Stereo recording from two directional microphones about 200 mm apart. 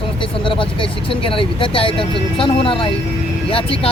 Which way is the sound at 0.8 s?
25° left (ahead or behind).